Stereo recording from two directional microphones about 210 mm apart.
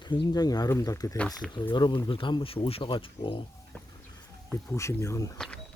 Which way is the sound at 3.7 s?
5° left (ahead or behind).